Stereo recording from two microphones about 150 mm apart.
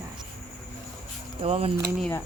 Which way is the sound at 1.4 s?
40° right (ahead or behind).